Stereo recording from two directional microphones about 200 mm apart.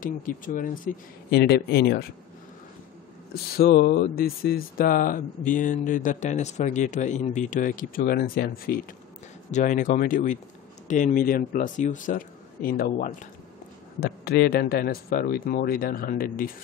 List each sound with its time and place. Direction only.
0.0 s speech: 45° left (ahead or behind)
3.3 s speech: 50° left (ahead or behind)
9.5 s speech: 40° left (ahead or behind)